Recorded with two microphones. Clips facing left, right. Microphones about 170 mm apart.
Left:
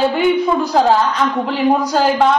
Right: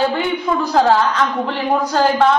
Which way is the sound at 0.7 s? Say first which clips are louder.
Right 1 dB; 15° left (ahead or behind).